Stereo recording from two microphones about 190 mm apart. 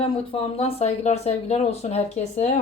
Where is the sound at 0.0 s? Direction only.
30° left (ahead or behind).